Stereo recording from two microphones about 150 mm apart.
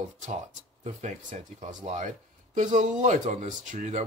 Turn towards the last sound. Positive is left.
turn(degrees=-55)  # may be behind; listen again after turning